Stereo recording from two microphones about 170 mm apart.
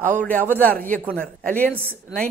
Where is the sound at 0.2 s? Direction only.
10° left (ahead or behind).